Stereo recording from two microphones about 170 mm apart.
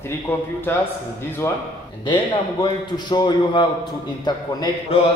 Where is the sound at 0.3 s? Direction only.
10° left (ahead or behind).